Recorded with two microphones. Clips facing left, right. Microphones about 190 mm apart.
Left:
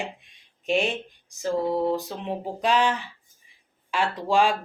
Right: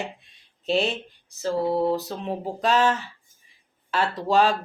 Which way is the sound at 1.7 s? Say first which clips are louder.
Right 2 dB; 10° right (ahead or behind).